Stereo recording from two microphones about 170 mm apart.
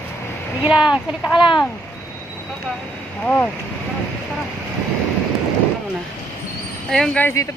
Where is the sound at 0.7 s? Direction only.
5° right (ahead or behind).